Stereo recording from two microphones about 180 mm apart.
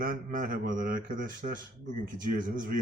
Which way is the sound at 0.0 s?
50° right (ahead or behind).